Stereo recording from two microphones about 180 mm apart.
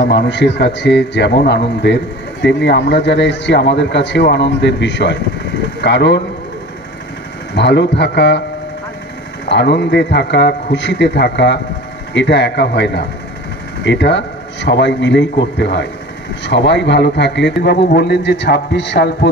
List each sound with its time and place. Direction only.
0.1 s a man's voice: 70° left (ahead or behind)
7.5 s a man's voice: 70° left (ahead or behind)
9.5 s a man's voice: 75° left (ahead or behind)